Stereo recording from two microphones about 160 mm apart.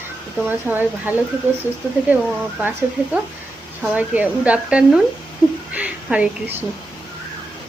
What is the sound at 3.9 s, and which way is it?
A woman's voice, 10° right (ahead or behind).